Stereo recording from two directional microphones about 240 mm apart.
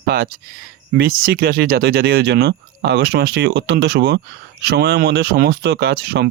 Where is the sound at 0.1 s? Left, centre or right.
Right.